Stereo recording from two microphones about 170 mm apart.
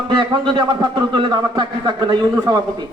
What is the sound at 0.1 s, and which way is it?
A man's voice, 25° right (ahead or behind).